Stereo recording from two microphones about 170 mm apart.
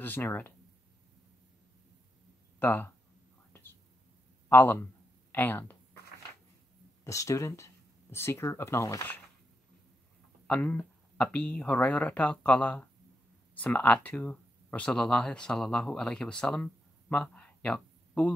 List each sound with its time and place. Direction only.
0.0 s speech: 10° left (ahead or behind)
2.6 s speech: 10° left (ahead or behind)
4.5 s speech: 10° left (ahead or behind)
7.1 s speech: 20° left (ahead or behind)
10.4 s speech: 5° left (ahead or behind)